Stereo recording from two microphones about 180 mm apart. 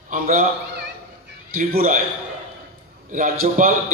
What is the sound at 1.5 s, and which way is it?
Speech, 55° right (ahead or behind).